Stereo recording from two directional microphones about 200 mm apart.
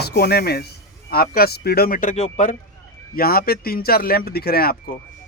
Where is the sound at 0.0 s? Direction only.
55° left (ahead or behind); by 2.6 s 35° left (ahead or behind).